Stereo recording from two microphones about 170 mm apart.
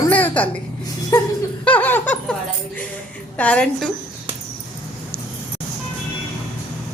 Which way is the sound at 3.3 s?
5° left (ahead or behind).